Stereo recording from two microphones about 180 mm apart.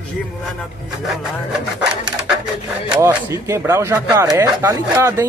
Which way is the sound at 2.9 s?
10° right (ahead or behind).